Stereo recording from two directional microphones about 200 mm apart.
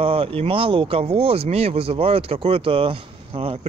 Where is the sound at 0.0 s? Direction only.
30° right (ahead or behind).